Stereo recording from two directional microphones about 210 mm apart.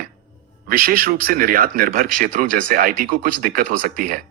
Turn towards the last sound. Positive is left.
turn(degrees=-40)  # may be behind; listen again after turning